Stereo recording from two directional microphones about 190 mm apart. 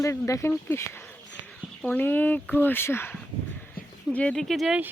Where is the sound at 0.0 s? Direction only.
15° left (ahead or behind).